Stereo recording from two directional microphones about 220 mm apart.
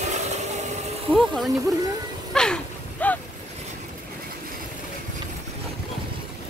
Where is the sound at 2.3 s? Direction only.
5° left (ahead or behind).